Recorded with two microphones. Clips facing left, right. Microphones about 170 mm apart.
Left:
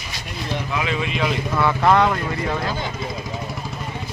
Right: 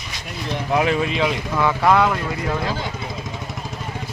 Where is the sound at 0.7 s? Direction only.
45° right (ahead or behind).